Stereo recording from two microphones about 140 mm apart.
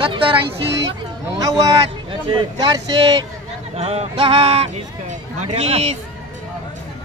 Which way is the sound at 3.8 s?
45° right (ahead or behind).